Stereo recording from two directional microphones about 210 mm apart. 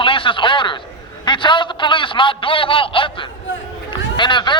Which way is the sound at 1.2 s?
20° left (ahead or behind).